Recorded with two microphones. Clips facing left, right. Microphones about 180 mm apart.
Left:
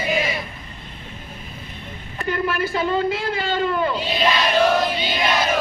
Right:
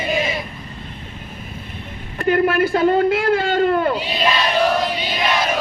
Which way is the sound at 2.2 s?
55° right (ahead or behind).